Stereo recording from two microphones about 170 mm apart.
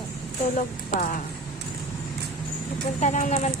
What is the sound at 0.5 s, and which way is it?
Speech, 50° left (ahead or behind).